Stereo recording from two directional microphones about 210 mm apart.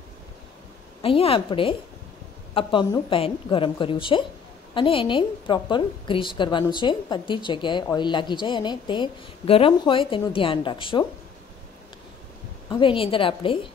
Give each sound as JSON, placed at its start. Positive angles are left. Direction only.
{"t": 1.0, "sound": "a woman's voice", "side_deg": 25}
{"t": 12.6, "sound": "a woman's voice", "side_deg": 25}